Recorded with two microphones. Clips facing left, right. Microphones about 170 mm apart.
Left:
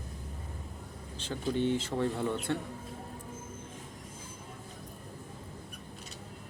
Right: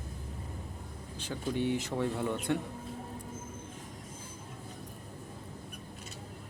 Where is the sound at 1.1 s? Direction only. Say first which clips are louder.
Left 2 dB; 10° right (ahead or behind).